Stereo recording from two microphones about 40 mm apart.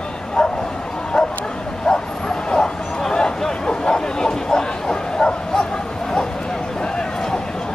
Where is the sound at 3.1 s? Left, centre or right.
Centre.